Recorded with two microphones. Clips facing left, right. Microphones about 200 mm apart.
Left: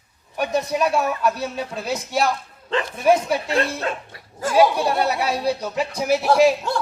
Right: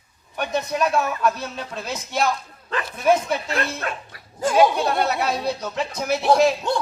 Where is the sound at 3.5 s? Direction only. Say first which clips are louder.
Left 4 dB; 25° left (ahead or behind).